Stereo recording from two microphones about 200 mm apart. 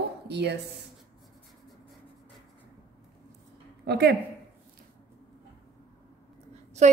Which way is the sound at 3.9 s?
55° right (ahead or behind).